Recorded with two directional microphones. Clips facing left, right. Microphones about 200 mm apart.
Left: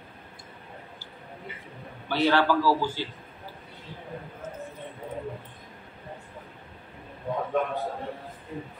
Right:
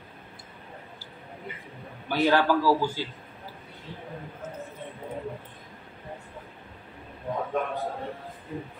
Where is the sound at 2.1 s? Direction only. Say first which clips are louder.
Right 1 dB; 15° right (ahead or behind).